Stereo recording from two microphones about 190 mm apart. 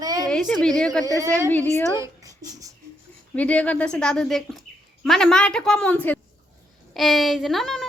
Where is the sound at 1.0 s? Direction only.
15° right (ahead or behind).